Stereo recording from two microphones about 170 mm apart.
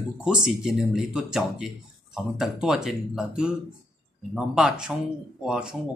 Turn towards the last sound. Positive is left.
turn(degrees=-5)  # may be behind; listen again after turning